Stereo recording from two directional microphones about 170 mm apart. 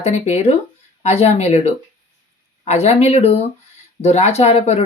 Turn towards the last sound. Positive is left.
turn(degrees=40)  # may be behind; listen again after turning